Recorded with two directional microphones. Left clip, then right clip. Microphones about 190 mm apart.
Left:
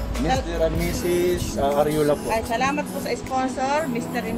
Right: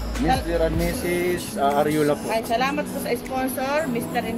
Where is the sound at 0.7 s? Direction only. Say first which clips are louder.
Left 1 dB; centre (ahead or behind).